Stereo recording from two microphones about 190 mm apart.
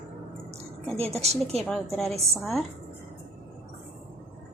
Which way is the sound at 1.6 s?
Centre (ahead or behind).